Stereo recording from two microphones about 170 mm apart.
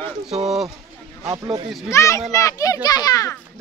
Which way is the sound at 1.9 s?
15° left (ahead or behind).